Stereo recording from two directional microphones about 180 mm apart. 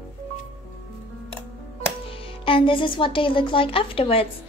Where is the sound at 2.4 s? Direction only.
30° left (ahead or behind).